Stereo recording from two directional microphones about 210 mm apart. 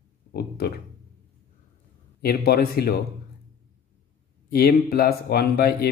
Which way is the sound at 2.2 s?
45° left (ahead or behind).